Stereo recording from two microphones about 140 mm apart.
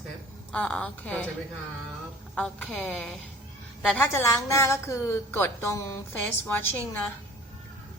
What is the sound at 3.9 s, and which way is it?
A woman's voice, 20° left (ahead or behind).